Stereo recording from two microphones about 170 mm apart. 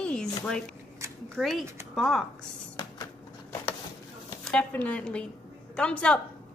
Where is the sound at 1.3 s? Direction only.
Centre (ahead or behind).